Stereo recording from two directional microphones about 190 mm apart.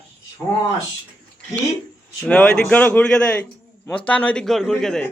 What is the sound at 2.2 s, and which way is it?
A man's voice, 5° left (ahead or behind).